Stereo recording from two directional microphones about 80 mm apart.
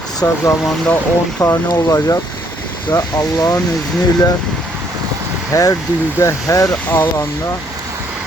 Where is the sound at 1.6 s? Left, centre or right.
Left.